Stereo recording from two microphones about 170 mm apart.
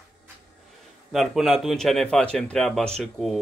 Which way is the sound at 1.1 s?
Centre (ahead or behind).